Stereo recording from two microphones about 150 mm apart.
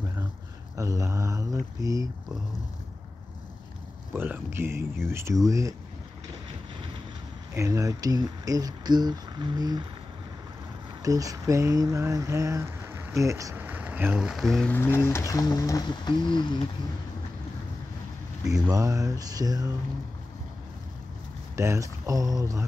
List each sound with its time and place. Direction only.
0.7 s speech: 20° right (ahead or behind)
4.1 s speech: 15° right (ahead or behind)
7.5 s speech: 20° right (ahead or behind)
11.0 s speech: 25° right (ahead or behind); by 14.8 s 5° left (ahead or behind)
14.8 s speech: 15° left (ahead or behind)
18.5 s speech: 20° right (ahead or behind)
21.5 s speech: 20° right (ahead or behind)